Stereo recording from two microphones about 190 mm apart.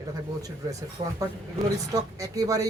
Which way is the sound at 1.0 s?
30° right (ahead or behind).